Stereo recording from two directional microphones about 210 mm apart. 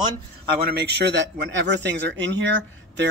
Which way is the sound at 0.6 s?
50° right (ahead or behind).